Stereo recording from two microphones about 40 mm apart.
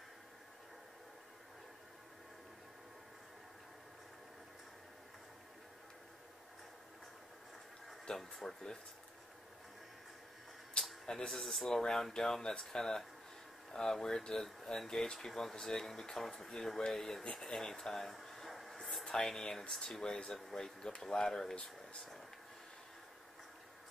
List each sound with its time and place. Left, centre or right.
8.1 s speech: centre
10.8 s a sound: left
11.1 s speech: centre
11.3 s speech: centre
17.2 s a sound: centre
19.0 s speech: centre